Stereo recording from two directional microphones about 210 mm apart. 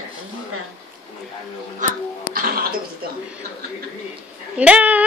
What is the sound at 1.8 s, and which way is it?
Music, 40° right (ahead or behind).